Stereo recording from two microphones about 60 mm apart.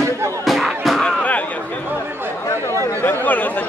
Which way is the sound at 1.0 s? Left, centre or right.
Left.